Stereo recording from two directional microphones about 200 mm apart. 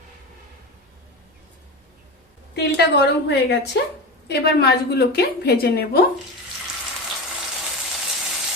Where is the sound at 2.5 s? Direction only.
55° left (ahead or behind).